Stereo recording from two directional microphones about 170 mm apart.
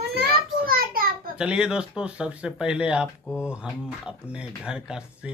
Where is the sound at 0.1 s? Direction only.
65° right (ahead or behind).